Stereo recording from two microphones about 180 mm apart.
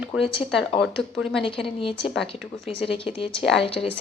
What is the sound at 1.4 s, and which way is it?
A woman's voice, 30° left (ahead or behind).